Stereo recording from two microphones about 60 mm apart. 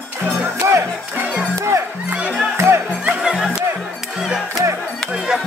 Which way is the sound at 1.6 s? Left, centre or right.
Right.